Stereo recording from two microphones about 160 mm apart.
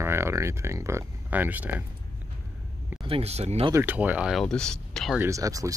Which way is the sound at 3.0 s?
35° right (ahead or behind).